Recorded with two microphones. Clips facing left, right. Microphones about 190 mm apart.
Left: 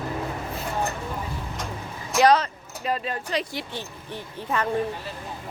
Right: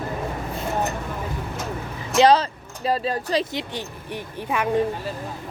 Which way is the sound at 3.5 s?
20° right (ahead or behind).